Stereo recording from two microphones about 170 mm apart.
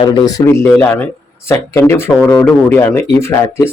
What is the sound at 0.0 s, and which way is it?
Speech, 25° left (ahead or behind).